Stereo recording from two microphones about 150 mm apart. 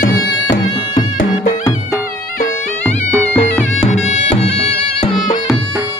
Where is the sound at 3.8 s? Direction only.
50° left (ahead or behind).